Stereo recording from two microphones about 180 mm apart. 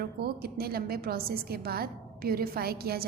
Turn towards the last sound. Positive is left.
turn(degrees=-60)  # may be behind; listen again after turning